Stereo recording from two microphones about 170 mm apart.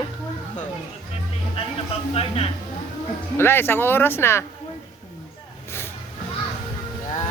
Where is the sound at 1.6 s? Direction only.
35° left (ahead or behind).